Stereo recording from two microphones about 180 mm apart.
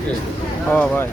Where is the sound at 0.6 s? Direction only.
5° left (ahead or behind).